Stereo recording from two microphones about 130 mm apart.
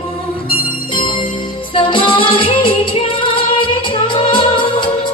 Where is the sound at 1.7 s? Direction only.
40° left (ahead or behind).